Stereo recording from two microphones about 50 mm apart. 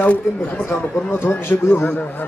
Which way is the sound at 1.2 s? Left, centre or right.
Left.